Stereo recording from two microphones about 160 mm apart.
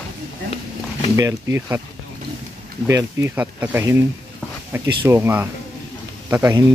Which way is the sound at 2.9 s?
20° right (ahead or behind).